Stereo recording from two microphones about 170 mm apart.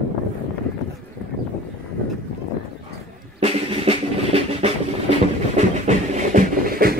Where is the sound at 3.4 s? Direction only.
35° right (ahead or behind).